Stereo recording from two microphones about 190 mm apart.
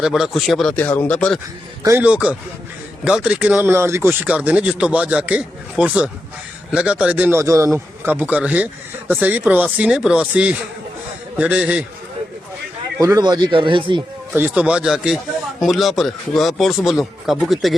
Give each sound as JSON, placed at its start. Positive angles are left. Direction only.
{"t": 0.0, "sound": "speech", "side_deg": 0}
{"t": 1.8, "sound": "speech", "side_deg": -10}
{"t": 13.0, "sound": "speech", "side_deg": -20}
{"t": 14.3, "sound": "speech", "side_deg": -10}